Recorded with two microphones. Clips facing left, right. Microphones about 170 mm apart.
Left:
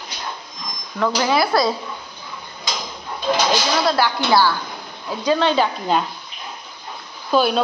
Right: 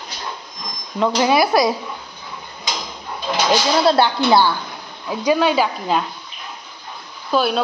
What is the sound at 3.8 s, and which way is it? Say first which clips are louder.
Speech: right 4 dB; 25° right (ahead or behind).